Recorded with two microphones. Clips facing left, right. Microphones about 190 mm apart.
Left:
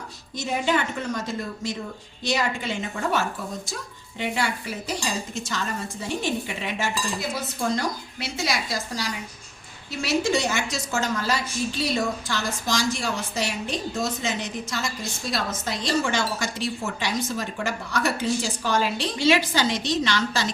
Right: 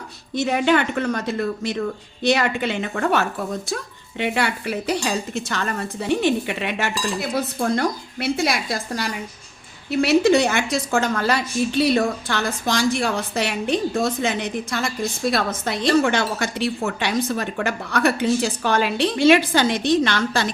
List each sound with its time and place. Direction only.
0.3 s a woman's voice: 65° right (ahead or behind)